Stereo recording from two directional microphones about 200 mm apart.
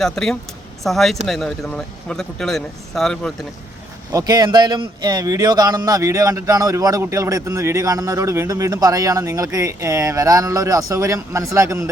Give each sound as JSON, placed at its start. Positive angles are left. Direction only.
{"t": 0.0, "sound": "speech", "side_deg": 0}
{"t": 4.1, "sound": "speech", "side_deg": -20}